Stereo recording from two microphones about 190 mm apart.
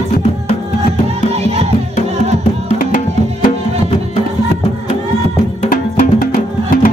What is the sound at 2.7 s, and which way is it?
Music, 45° left (ahead or behind).